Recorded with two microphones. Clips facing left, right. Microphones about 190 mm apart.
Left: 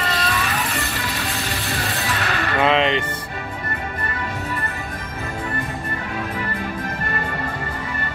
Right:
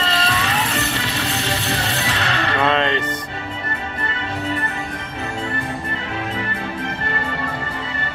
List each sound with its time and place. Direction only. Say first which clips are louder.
0.0 s music: right 2 dB; 25° right (ahead or behind)
2.6 s music: left 2 dB; 15° left (ahead or behind)